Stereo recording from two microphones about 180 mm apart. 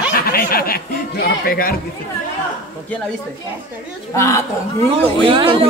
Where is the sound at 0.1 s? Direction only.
60° left (ahead or behind).